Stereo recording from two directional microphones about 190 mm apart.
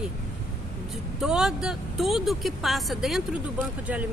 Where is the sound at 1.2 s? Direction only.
Centre (ahead or behind).